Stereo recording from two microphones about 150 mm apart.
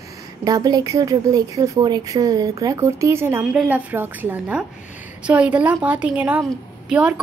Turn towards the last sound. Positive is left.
turn(degrees=-5)  # may be behind; listen again after turning